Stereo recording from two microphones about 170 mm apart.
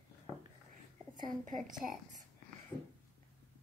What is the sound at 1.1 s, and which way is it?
Speech, 50° right (ahead or behind).